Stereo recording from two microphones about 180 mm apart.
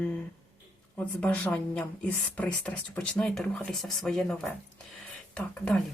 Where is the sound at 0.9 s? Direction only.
5° left (ahead or behind).